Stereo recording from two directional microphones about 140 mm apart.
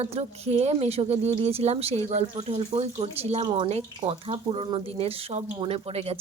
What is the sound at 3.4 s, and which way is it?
A woman's voice, 35° right (ahead or behind).